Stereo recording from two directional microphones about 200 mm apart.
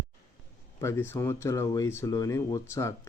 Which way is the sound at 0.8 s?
15° left (ahead or behind).